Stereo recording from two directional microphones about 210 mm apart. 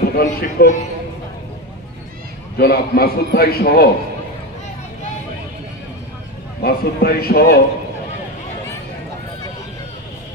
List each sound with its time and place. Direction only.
0.1 s a man's voice: 45° left (ahead or behind)
2.5 s a man's voice: 45° left (ahead or behind)
6.6 s a man's voice: 45° left (ahead or behind)